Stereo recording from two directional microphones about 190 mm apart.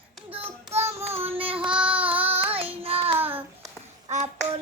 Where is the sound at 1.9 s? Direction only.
30° right (ahead or behind).